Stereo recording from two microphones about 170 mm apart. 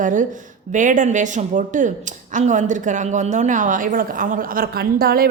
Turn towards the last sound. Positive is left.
turn(degrees=-65)  # may be behind; listen again after turning